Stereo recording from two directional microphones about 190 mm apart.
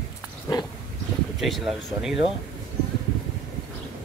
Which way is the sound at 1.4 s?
Centre (ahead or behind).